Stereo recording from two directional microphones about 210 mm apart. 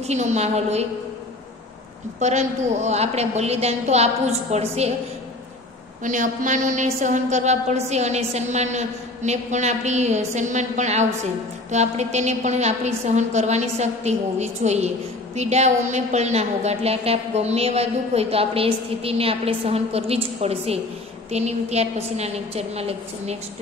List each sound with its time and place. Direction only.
0.0 s a woman's voice: 35° right (ahead or behind)
2.1 s a woman's voice: 35° right (ahead or behind)
6.0 s a woman's voice: 35° right (ahead or behind)